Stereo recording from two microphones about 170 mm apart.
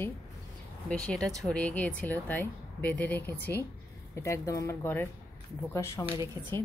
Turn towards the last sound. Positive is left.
turn(degrees=-20)  # may be behind; listen again after turning